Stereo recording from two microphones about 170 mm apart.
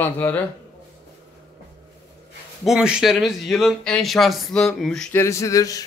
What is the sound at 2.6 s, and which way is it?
A man's voice, 5° right (ahead or behind).